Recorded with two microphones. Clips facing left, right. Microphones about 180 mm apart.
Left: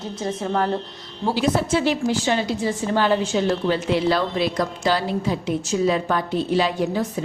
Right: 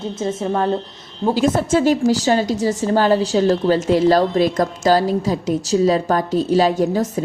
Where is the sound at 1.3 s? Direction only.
45° right (ahead or behind).